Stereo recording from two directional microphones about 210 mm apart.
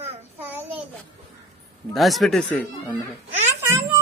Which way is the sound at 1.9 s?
Centre (ahead or behind).